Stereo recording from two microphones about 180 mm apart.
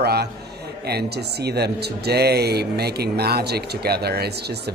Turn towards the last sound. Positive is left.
turn(degrees=-60)  # may be behind; listen again after turning